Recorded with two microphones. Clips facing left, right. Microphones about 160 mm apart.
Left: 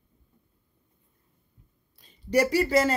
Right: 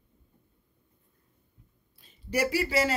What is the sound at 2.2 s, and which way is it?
Speech, 10° right (ahead or behind).